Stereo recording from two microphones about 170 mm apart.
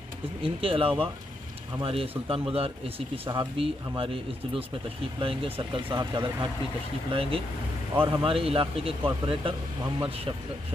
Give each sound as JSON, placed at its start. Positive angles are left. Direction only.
{"t": 0.4, "sound": "speech", "side_deg": -30}